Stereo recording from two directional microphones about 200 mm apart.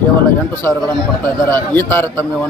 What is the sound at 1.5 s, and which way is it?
Speech, 10° left (ahead or behind).